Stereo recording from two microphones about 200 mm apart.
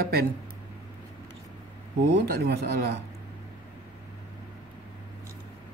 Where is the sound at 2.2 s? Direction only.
55° right (ahead or behind).